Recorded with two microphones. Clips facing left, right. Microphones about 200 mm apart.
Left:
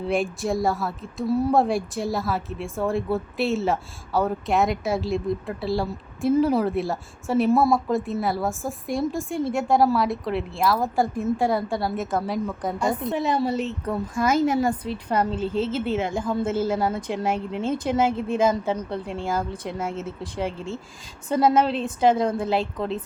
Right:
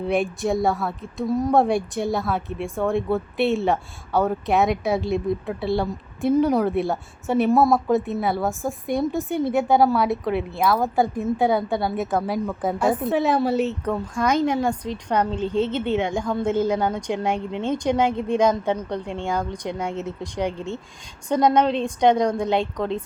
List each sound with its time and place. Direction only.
0.1 s a woman's voice: centre (ahead or behind)
1.3 s speech: 15° right (ahead or behind)
1.5 s a woman's voice: centre (ahead or behind)